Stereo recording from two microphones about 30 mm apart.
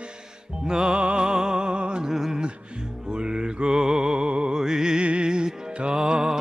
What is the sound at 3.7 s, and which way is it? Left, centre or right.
Music, centre.